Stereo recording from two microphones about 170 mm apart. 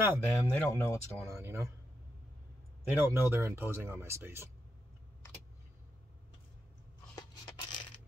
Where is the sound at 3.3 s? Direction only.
15° right (ahead or behind).